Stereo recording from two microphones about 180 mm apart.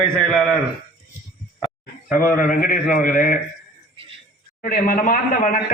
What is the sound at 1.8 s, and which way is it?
Speech, 50° left (ahead or behind).